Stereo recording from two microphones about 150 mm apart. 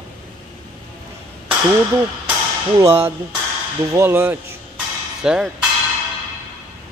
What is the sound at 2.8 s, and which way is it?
Speech, 15° right (ahead or behind).